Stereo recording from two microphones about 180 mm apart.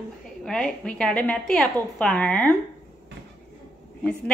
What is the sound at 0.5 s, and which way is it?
A woman's voice, 5° left (ahead or behind).